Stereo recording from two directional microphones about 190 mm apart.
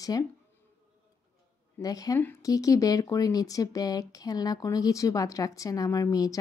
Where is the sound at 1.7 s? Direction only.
20° left (ahead or behind).